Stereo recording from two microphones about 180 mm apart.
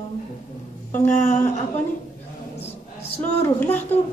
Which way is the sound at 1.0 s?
45° left (ahead or behind).